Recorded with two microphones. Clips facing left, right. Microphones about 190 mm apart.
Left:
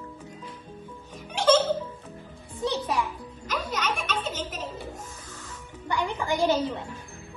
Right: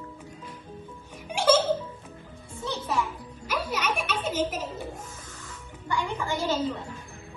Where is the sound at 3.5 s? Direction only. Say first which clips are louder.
Right 1 dB; 10° right (ahead or behind).